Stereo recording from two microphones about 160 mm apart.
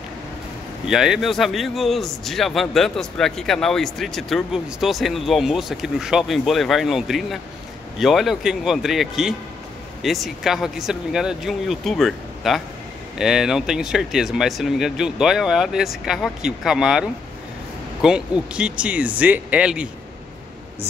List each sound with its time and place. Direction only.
0.8 s a man's voice: 5° right (ahead or behind)